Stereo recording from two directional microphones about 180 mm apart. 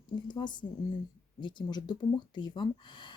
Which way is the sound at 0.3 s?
25° left (ahead or behind).